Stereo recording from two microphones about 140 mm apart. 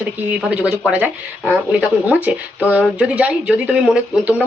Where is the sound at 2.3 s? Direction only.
10° right (ahead or behind).